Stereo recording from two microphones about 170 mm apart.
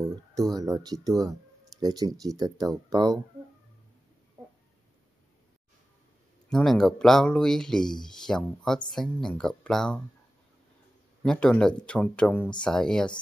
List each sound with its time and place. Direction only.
0.1 s speech: 20° right (ahead or behind)
6.5 s speech: centre (ahead or behind)
11.2 s speech: 5° left (ahead or behind)